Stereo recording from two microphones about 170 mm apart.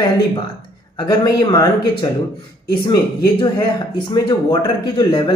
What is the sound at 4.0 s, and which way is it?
Speech, 30° left (ahead or behind).